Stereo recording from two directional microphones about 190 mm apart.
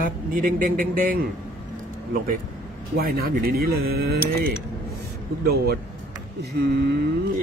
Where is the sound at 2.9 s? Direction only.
50° right (ahead or behind).